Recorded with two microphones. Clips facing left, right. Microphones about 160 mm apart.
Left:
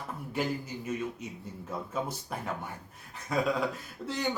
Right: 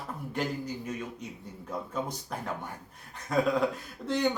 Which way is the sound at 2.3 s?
5° left (ahead or behind).